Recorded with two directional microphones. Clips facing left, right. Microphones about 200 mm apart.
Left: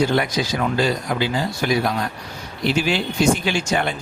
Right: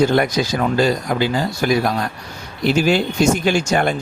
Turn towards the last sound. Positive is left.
turn(degrees=-45)  # may be behind; listen again after turning